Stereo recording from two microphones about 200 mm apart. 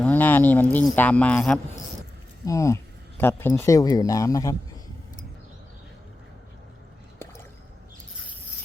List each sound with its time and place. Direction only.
0.0 s speech: 10° left (ahead or behind)
2.4 s speech: 15° left (ahead or behind)